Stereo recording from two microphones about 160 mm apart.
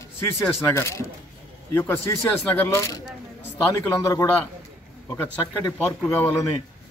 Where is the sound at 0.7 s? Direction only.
20° left (ahead or behind).